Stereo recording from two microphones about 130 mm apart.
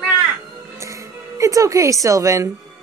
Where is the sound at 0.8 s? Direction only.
25° right (ahead or behind).